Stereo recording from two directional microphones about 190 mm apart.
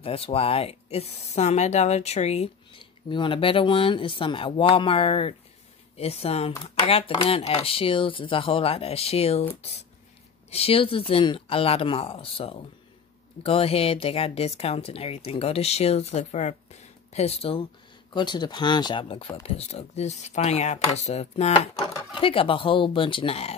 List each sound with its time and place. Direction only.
0.0 s speech: 30° left (ahead or behind)
21.8 s speech: 25° left (ahead or behind)